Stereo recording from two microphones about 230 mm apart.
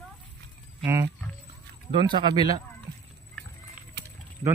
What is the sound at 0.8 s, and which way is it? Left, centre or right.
Speech, centre.